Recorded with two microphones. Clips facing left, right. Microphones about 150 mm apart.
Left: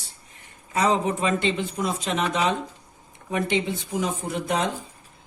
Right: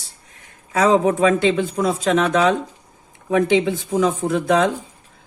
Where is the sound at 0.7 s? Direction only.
90° right.